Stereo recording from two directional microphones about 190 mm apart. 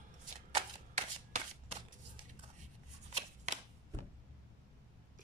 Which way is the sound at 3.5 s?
35° right (ahead or behind).